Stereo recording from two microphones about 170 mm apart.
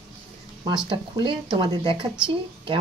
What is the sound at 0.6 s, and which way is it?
Speech, 25° right (ahead or behind).